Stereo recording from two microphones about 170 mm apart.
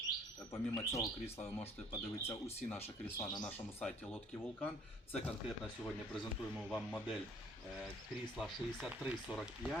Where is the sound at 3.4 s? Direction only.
5° left (ahead or behind).